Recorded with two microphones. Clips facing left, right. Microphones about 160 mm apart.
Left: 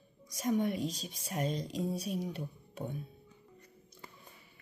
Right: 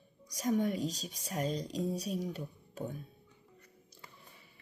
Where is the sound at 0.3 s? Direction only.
40° right (ahead or behind).